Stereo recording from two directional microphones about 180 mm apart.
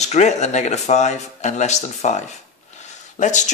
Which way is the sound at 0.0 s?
40° left (ahead or behind).